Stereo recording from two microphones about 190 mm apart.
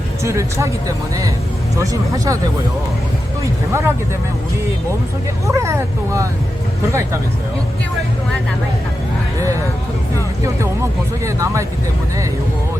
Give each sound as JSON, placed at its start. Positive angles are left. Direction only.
{"t": 0.3, "sound": "speech", "side_deg": -15}
{"t": 3.4, "sound": "speech", "side_deg": -15}
{"t": 5.5, "sound": "speech", "side_deg": -15}
{"t": 11.3, "sound": "speech", "side_deg": -15}